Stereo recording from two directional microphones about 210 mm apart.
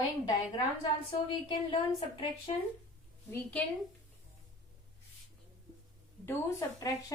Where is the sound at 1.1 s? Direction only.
25° left (ahead or behind).